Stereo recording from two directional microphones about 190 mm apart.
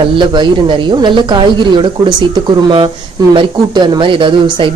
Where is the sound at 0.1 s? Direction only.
25° right (ahead or behind).